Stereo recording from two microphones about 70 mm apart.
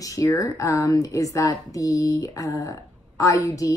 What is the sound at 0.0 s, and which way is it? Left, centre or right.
A woman's voice, left.